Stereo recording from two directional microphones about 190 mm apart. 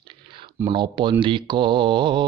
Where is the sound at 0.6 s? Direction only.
25° right (ahead or behind).